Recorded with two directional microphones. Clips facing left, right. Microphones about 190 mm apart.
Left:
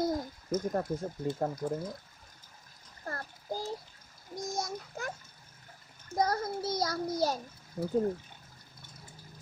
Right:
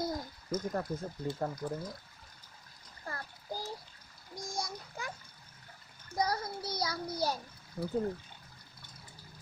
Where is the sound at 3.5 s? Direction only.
20° left (ahead or behind).